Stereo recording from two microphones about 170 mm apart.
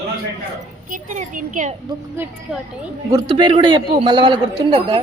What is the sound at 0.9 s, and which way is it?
Speech, 50° right (ahead or behind).